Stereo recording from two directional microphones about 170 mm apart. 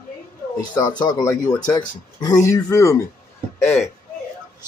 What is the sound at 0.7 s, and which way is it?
Speech, 25° left (ahead or behind).